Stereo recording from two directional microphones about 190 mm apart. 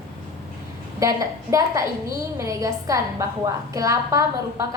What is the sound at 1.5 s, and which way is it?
A woman's voice, 15° right (ahead or behind).